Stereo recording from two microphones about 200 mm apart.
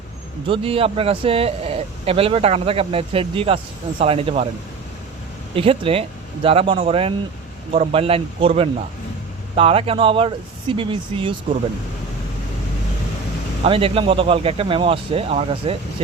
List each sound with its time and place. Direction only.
0.4 s speech: 25° right (ahead or behind)
5.5 s speech: 25° right (ahead or behind)
13.7 s speech: 30° right (ahead or behind)